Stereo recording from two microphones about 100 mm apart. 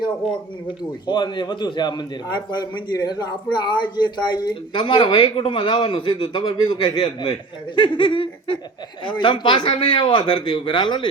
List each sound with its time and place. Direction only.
1.0 s a man's voice: 50° left (ahead or behind)
7.8 s a sound: 55° left (ahead or behind)
9.0 s a man's voice: 55° left (ahead or behind)